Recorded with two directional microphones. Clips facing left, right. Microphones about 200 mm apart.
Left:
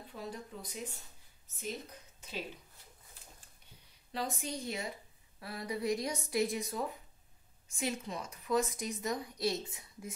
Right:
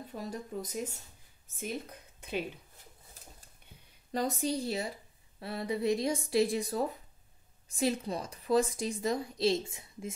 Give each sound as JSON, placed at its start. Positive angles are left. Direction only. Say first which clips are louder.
{"t": 0.1, "sound": "speech", "louder": "right 5 dB", "side_deg": -45}
{"t": 1.6, "sound": "speech", "louder": "right 4 dB", "side_deg": -55}
{"t": 4.1, "sound": "a woman's voice", "louder": "right 7 dB", "side_deg": -40}